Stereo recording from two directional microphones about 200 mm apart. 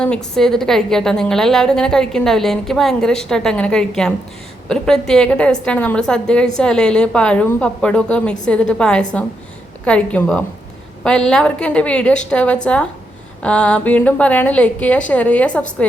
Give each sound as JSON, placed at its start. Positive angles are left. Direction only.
{"t": 0.0, "sound": "a woman's voice", "side_deg": 5}